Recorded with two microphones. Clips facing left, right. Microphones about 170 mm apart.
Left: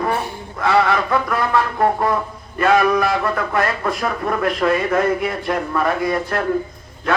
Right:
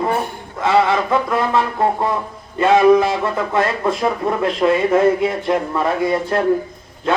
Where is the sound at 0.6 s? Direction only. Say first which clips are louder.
Right 1 dB; 20° right (ahead or behind).